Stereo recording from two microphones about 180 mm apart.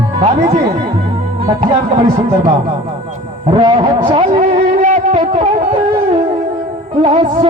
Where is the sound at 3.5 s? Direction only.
25° right (ahead or behind).